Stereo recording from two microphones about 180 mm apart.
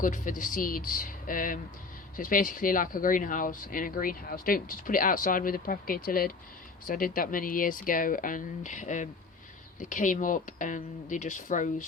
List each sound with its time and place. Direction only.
0.0 s speech: 45° left (ahead or behind)